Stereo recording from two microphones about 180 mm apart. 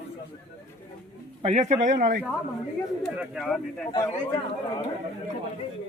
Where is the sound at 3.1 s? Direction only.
Centre (ahead or behind).